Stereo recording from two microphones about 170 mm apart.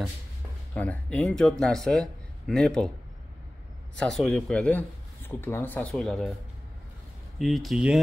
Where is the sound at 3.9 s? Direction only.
Centre (ahead or behind).